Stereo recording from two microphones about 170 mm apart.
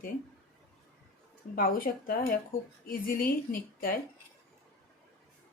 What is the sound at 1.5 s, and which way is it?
Speech, 55° left (ahead or behind).